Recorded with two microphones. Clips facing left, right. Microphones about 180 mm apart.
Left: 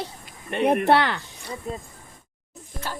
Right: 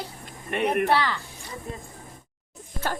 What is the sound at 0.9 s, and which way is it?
Speech, 65° left (ahead or behind).